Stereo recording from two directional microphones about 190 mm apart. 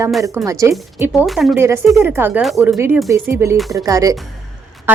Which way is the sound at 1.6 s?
15° right (ahead or behind).